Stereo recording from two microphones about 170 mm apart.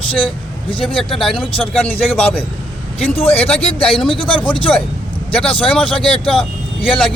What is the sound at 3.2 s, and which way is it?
Speech, 35° left (ahead or behind).